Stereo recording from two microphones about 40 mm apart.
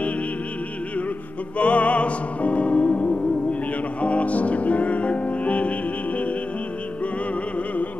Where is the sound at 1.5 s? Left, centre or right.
Left.